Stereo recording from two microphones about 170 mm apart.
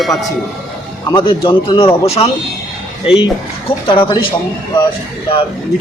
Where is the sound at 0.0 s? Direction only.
Centre (ahead or behind).